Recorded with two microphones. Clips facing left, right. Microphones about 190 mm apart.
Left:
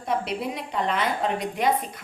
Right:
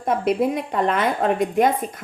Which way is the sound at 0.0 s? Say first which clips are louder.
Right 7 dB; 50° right (ahead or behind).